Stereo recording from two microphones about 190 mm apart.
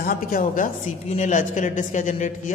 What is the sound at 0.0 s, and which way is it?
A man's voice, 50° left (ahead or behind).